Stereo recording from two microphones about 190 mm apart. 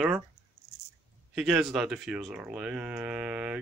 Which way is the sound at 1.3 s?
5° right (ahead or behind).